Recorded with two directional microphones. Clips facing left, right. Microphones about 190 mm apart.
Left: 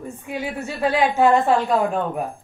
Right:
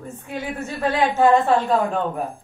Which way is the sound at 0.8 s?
10° left (ahead or behind).